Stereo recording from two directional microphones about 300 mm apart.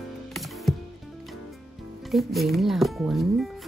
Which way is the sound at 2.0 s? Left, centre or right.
Centre.